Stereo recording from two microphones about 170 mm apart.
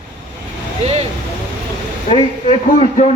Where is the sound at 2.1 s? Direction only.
35° left (ahead or behind).